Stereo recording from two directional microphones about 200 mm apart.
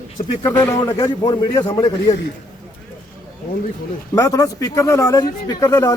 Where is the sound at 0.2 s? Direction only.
35° left (ahead or behind).